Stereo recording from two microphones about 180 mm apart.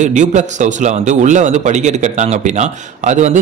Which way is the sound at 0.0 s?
40° right (ahead or behind).